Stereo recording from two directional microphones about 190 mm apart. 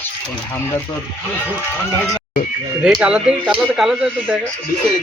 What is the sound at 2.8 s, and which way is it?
A man's voice, 5° right (ahead or behind).